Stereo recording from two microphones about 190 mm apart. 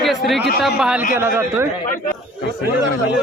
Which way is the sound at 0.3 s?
65° left (ahead or behind).